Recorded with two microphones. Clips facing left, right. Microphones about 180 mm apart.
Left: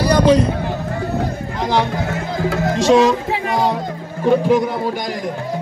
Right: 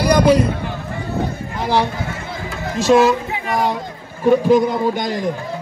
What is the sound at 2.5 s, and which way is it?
Speech, 90° left.